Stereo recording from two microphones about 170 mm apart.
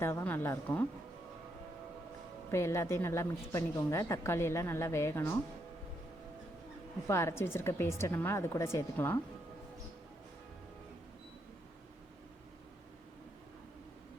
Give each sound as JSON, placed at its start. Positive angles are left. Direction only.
{"t": 0.0, "sound": "a woman's voice", "side_deg": 15}
{"t": 2.5, "sound": "a woman's voice", "side_deg": 15}
{"t": 7.1, "sound": "a woman's voice", "side_deg": 15}